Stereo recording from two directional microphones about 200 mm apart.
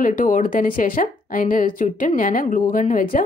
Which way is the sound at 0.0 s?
40° left (ahead or behind).